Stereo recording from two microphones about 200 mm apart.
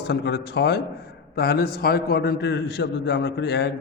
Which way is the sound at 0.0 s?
55° left (ahead or behind).